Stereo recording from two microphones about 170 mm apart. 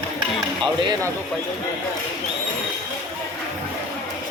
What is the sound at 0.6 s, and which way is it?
Speech, 25° right (ahead or behind).